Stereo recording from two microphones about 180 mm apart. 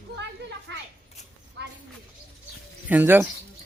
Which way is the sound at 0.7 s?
75° right (ahead or behind).